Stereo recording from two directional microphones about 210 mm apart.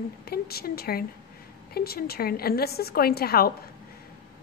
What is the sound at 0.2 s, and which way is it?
Speech, 50° left (ahead or behind).